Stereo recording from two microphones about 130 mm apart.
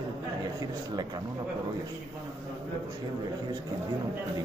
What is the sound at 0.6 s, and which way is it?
Speech, 30° right (ahead or behind).